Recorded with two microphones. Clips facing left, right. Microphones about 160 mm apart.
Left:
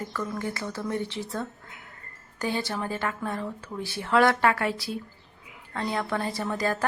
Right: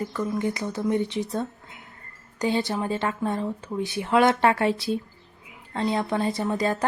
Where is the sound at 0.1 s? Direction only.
20° right (ahead or behind).